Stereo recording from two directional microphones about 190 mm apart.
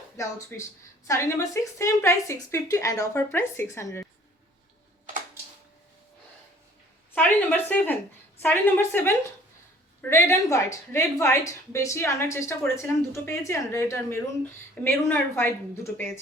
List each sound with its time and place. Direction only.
0.2 s a woman's voice: 15° left (ahead or behind)
7.1 s a sound: 10° left (ahead or behind)
8.4 s a woman's voice: 10° left (ahead or behind)